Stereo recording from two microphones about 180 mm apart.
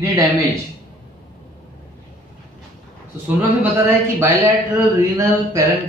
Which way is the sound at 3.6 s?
10° right (ahead or behind).